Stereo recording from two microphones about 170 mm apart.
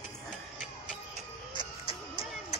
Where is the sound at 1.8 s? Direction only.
35° left (ahead or behind).